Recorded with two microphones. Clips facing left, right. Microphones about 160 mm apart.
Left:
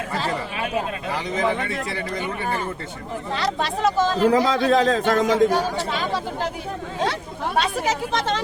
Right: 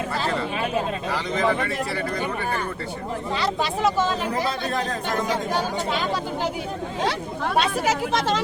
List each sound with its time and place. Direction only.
1.1 s speech: 20° left (ahead or behind)
3.3 s speech: centre (ahead or behind)
4.3 s speech: 90° left
7.6 s speech: 5° right (ahead or behind)